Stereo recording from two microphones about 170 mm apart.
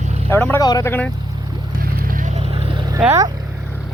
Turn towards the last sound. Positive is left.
turn(degrees=-15)  # may be behind; listen again after turning